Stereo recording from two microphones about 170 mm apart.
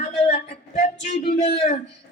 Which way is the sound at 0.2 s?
45° left (ahead or behind).